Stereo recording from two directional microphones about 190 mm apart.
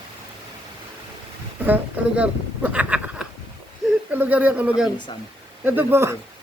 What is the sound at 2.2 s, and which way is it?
Speech, 5° right (ahead or behind).